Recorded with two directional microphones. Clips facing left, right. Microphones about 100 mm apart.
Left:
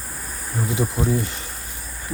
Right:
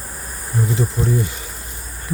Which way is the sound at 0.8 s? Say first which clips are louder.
Left 2 dB; 10° left (ahead or behind).